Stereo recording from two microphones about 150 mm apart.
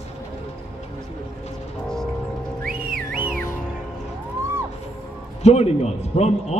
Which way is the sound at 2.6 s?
75° right (ahead or behind).